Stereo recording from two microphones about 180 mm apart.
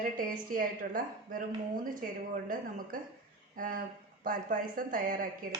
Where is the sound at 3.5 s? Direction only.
50° right (ahead or behind).